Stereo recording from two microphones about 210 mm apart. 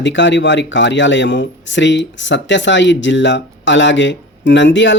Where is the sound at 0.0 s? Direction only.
60° left (ahead or behind).